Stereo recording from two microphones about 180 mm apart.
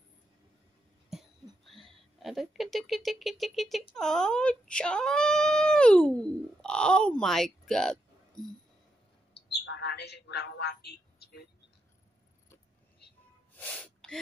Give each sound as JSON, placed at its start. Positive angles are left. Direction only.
{"t": 1.7, "sound": "speech", "side_deg": 0}
{"t": 9.3, "sound": "a sound", "side_deg": 70}
{"t": 13.6, "sound": "sneeze", "side_deg": 5}